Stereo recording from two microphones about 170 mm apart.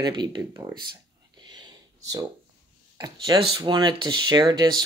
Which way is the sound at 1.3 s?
25° right (ahead or behind).